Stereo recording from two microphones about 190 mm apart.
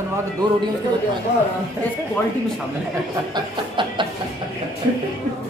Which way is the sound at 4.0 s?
25° right (ahead or behind).